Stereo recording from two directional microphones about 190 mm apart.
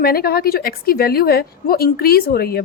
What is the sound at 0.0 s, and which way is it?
A woman's voice, 50° left (ahead or behind).